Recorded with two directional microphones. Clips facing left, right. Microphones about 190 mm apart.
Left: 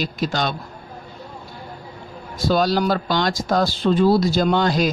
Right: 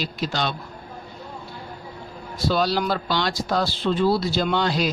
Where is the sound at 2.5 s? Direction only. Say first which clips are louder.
Left 4 dB; 45° left (ahead or behind).